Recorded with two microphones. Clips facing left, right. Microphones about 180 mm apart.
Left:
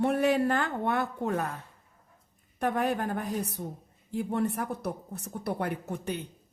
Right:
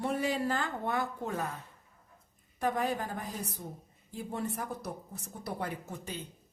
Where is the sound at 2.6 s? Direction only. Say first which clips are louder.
Left 3 dB; 60° left (ahead or behind).